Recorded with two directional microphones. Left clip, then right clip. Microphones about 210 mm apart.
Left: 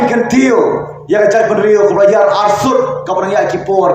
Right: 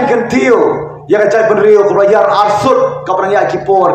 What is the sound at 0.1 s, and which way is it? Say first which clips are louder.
A man's voice: right 2 dB; 20° right (ahead or behind).